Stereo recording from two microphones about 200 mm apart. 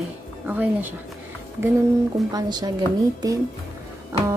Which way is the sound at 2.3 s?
20° right (ahead or behind).